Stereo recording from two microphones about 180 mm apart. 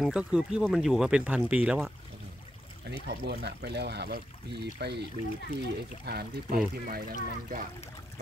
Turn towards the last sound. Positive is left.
turn(degrees=-50)  # may be behind; listen again after turning